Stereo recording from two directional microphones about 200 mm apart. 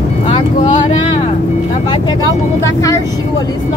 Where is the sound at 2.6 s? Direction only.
15° left (ahead or behind).